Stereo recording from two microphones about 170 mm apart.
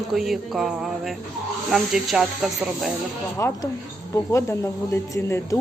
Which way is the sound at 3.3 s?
20° left (ahead or behind).